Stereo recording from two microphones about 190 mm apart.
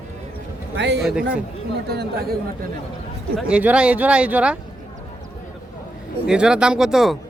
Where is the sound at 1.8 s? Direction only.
55° right (ahead or behind).